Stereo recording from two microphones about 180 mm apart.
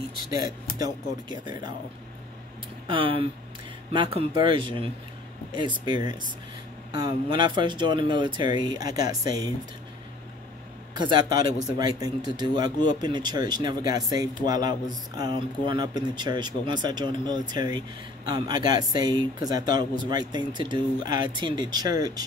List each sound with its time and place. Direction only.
0.3 s speech: 20° right (ahead or behind)
2.9 s speech: 30° right (ahead or behind)
7.2 s speech: 25° right (ahead or behind)
11.0 s speech: 25° right (ahead or behind)